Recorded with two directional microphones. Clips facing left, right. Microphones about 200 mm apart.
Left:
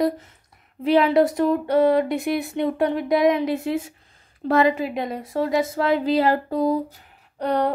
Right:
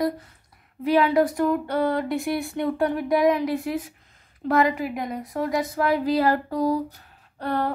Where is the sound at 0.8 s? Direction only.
25° left (ahead or behind).